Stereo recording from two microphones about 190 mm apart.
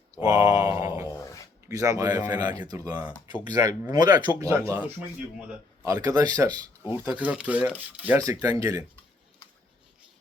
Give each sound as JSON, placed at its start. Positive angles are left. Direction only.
{"t": 0.2, "sound": "mantra", "side_deg": -20}
{"t": 1.1, "sound": "a sound", "side_deg": 15}
{"t": 1.6, "sound": "speech", "side_deg": -15}